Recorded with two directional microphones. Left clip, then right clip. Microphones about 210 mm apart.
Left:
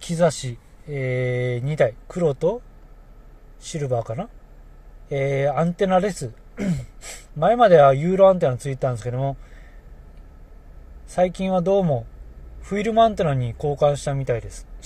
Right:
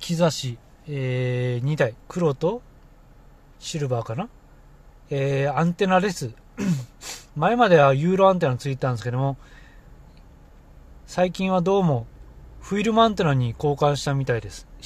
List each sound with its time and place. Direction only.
0.0 s speech: 10° right (ahead or behind)
3.6 s speech: 15° right (ahead or behind)
11.1 s speech: 20° right (ahead or behind)